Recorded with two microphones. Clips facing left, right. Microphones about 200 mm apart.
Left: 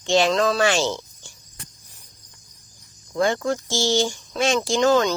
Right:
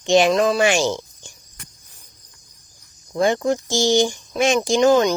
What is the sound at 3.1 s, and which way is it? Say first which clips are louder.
Speech: right 3 dB; 20° right (ahead or behind).